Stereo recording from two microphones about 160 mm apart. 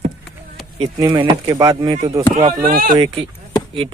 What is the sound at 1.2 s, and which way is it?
Speech, 30° right (ahead or behind).